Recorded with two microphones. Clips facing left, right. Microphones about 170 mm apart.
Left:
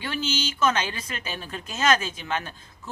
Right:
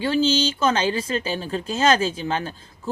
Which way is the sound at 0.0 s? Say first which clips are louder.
Right 9 dB; 30° right (ahead or behind).